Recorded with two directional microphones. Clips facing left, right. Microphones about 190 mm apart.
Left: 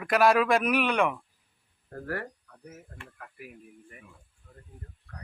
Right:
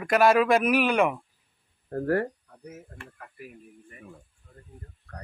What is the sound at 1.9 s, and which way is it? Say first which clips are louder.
Speech: right 10 dB; 35° right (ahead or behind).